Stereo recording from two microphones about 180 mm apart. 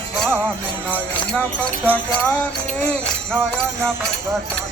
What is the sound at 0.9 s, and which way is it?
Speech, 10° left (ahead or behind).